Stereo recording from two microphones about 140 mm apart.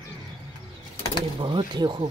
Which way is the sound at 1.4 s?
35° right (ahead or behind).